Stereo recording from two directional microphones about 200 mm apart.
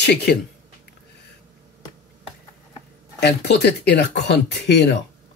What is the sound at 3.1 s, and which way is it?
Speech, 55° left (ahead or behind).